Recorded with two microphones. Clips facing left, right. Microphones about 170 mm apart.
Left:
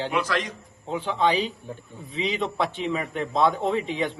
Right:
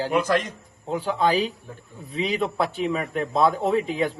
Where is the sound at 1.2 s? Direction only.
40° right (ahead or behind).